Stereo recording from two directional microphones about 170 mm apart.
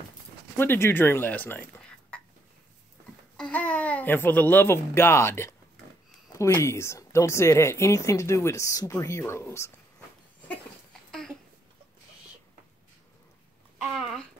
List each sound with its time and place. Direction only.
0.6 s speech: 15° left (ahead or behind)
3.3 s speech: 5° left (ahead or behind)
11.1 s a sound: 5° left (ahead or behind)
13.8 s speech: centre (ahead or behind)